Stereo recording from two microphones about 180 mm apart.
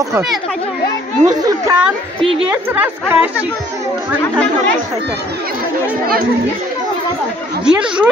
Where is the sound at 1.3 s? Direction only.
20° right (ahead or behind).